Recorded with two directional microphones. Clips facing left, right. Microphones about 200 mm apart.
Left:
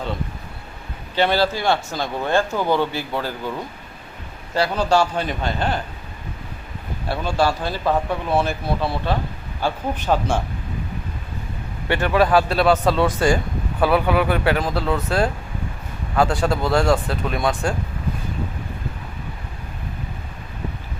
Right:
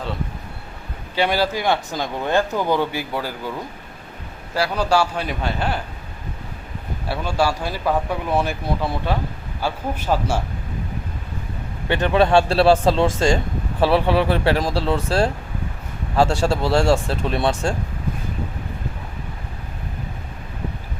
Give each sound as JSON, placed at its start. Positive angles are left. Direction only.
{"t": 1.1, "sound": "speech", "side_deg": -10}
{"t": 4.5, "sound": "speech", "side_deg": -5}
{"t": 7.1, "sound": "speech", "side_deg": -10}
{"t": 11.9, "sound": "speech", "side_deg": -20}